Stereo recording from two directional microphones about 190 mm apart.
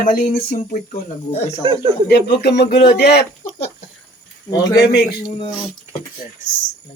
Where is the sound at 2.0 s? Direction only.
55° left (ahead or behind).